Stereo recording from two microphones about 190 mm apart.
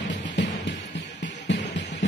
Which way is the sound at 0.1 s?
70° left (ahead or behind).